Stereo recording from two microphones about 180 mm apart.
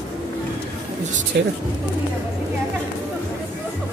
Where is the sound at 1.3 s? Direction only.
65° right (ahead or behind).